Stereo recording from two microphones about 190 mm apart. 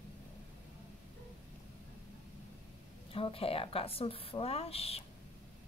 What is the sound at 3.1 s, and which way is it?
Speech, 30° left (ahead or behind).